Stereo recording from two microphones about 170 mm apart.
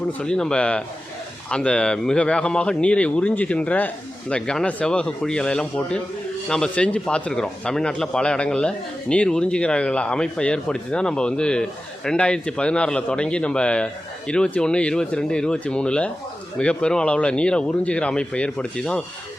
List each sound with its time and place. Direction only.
0.2 s speech: 5° left (ahead or behind)